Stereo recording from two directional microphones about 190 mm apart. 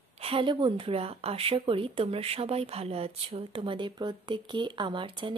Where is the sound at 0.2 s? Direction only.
30° right (ahead or behind).